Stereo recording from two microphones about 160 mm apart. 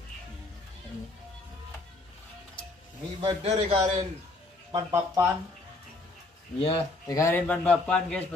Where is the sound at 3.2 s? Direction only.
40° right (ahead or behind).